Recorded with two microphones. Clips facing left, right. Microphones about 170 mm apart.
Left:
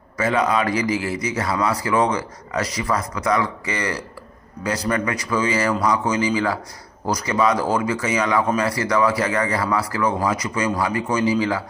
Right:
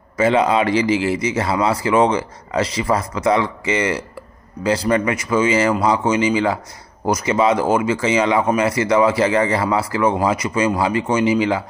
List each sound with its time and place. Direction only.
0.2 s speech: 25° right (ahead or behind)